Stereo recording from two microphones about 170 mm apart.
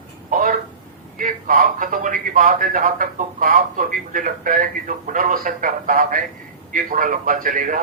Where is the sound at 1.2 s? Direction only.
55° right (ahead or behind).